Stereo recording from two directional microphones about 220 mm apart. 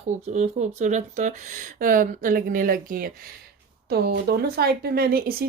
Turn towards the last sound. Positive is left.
turn(degrees=-45)  # may be behind; listen again after turning